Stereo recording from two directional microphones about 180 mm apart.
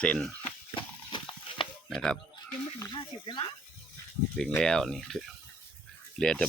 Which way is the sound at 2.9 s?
25° left (ahead or behind).